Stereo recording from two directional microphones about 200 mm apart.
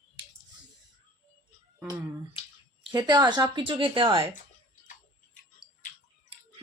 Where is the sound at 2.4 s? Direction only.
25° left (ahead or behind).